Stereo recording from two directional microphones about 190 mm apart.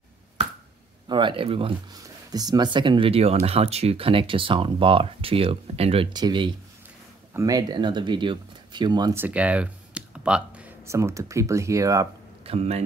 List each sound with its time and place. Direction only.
1.0 s speech: 25° right (ahead or behind)
12.4 s speech: 35° right (ahead or behind)